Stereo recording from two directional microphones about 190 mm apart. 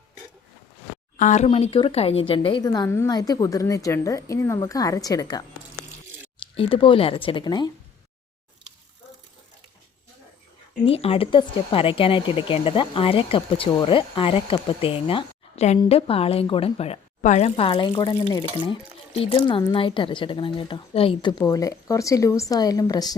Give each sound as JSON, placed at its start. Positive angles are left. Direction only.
{"t": 1.1, "sound": "speech", "side_deg": 40}
{"t": 6.6, "sound": "speech", "side_deg": 25}
{"t": 10.8, "sound": "a woman's voice", "side_deg": 30}